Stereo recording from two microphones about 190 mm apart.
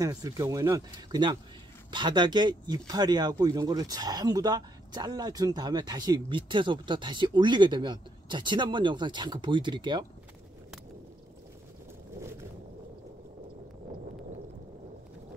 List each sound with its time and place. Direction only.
0.0 s speech: 20° right (ahead or behind)